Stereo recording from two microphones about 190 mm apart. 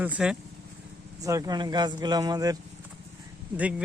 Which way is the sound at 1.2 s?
15° right (ahead or behind).